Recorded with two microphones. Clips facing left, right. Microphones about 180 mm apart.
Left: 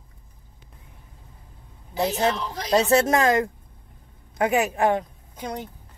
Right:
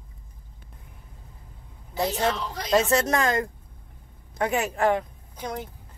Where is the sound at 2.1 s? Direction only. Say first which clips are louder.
Left 2 dB; 10° left (ahead or behind).